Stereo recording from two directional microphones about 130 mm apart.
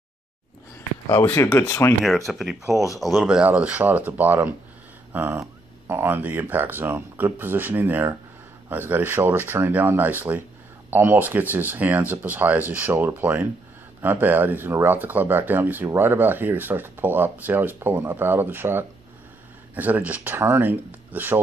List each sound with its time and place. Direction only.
1.0 s speech: 20° left (ahead or behind)
2.0 s speech: centre (ahead or behind)